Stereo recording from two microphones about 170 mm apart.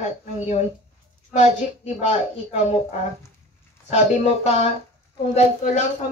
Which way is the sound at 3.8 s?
40° left (ahead or behind).